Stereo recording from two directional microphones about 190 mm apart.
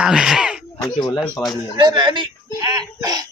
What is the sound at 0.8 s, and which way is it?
Speech, 20° left (ahead or behind).